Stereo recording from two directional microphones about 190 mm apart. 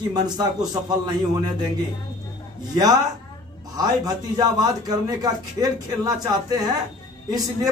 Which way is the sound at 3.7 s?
20° right (ahead or behind).